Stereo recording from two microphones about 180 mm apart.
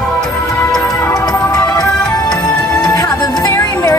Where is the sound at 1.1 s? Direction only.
20° left (ahead or behind).